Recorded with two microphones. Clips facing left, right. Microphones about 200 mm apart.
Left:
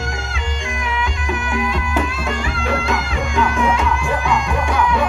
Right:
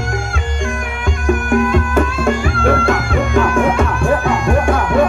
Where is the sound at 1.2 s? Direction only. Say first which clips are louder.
Right 10 dB; 50° right (ahead or behind).